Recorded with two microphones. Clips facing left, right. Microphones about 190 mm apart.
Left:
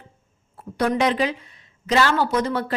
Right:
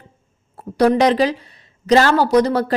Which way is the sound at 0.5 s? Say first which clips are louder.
Right 7 dB; 40° right (ahead or behind).